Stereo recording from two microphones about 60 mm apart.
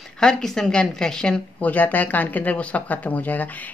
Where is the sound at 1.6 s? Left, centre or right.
Left.